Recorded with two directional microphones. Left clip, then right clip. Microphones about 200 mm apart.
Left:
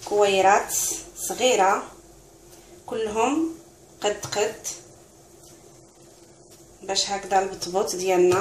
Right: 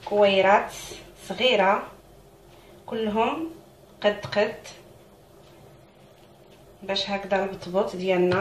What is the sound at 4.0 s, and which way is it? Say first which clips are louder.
Speech: right 2 dB; 40° left (ahead or behind).